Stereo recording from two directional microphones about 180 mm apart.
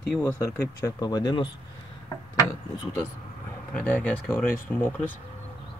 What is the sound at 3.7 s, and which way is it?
Speech, 10° left (ahead or behind).